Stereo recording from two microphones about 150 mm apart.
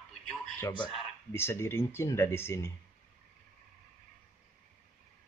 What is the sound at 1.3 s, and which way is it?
Speech, 15° left (ahead or behind).